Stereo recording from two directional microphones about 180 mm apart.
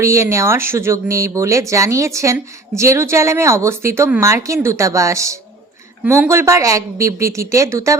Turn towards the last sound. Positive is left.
turn(degrees=-15)  # may be behind; listen again after turning